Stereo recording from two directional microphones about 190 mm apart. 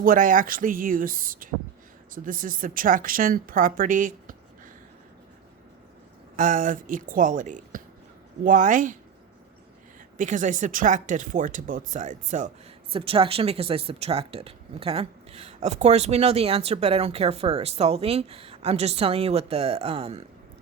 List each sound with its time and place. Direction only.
0.0 s speech: 45° right (ahead or behind)
6.3 s speech: 45° right (ahead or behind)
10.2 s speech: 40° right (ahead or behind)
12.9 s speech: 30° right (ahead or behind)